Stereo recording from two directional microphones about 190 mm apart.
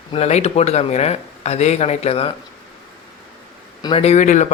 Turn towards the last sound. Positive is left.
turn(degrees=40)  # may be behind; listen again after turning